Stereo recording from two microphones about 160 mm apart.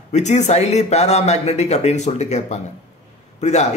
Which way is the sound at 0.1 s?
45° left (ahead or behind).